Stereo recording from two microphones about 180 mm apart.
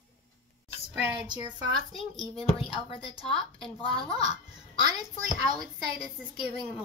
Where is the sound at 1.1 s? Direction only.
25° right (ahead or behind).